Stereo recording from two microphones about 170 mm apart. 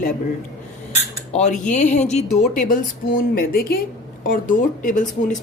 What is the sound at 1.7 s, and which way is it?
Speech, 45° left (ahead or behind).